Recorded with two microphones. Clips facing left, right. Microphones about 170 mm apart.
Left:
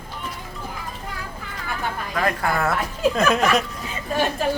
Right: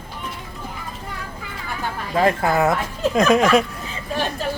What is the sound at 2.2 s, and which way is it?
Speech, 25° right (ahead or behind).